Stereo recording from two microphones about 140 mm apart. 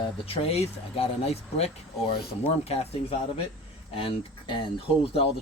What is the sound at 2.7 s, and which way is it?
Speech, 45° left (ahead or behind).